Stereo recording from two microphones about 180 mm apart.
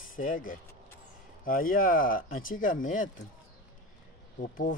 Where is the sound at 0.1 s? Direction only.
50° left (ahead or behind).